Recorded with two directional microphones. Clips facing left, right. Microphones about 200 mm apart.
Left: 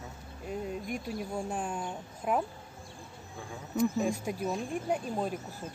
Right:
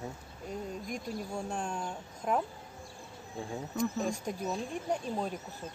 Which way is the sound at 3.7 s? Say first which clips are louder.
Left 5 dB; 5° left (ahead or behind).